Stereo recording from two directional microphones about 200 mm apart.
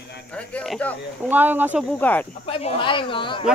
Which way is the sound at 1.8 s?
10° left (ahead or behind).